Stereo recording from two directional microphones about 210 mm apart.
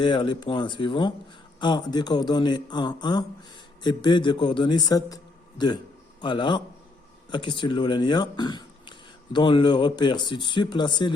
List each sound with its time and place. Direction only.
0.0 s speech: 20° left (ahead or behind)